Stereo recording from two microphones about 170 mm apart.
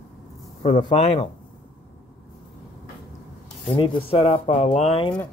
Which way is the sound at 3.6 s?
30° left (ahead or behind).